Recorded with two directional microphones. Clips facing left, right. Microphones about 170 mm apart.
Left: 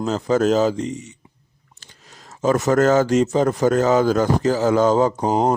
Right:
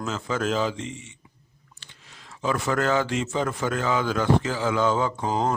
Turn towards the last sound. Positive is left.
turn(degrees=40)  # may be behind; listen again after turning